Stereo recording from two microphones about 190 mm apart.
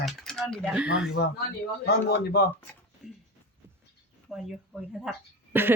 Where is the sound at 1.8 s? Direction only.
60° left (ahead or behind).